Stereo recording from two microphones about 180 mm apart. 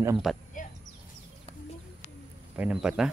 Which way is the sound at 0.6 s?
45° left (ahead or behind).